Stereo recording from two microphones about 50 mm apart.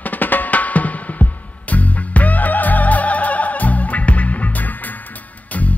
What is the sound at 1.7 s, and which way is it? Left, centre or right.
Music, left.